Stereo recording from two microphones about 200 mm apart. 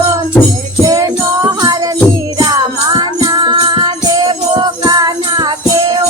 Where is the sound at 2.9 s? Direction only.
20° right (ahead or behind).